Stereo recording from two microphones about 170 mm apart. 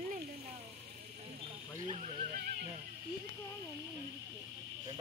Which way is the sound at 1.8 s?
40° right (ahead or behind).